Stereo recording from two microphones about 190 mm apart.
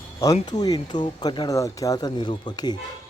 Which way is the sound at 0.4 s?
20° left (ahead or behind).